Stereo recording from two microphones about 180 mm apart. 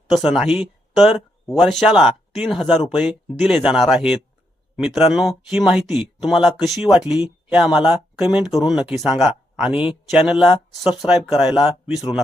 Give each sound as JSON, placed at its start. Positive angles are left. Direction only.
{"t": 0.1, "sound": "speech", "side_deg": 0}